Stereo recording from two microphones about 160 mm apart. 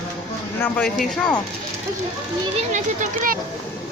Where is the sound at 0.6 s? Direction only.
10° left (ahead or behind).